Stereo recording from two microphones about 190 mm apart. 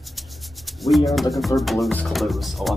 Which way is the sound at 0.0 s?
Centre (ahead or behind).